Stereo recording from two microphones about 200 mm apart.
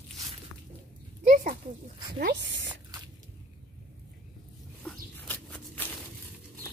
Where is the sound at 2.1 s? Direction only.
60° right (ahead or behind).